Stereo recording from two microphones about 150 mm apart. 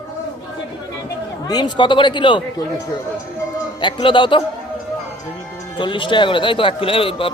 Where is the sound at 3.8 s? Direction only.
30° left (ahead or behind).